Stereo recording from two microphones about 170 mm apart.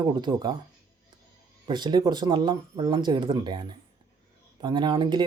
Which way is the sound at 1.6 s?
25° right (ahead or behind).